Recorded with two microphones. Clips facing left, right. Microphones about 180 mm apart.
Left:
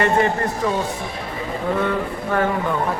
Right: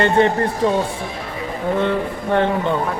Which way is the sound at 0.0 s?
30° right (ahead or behind).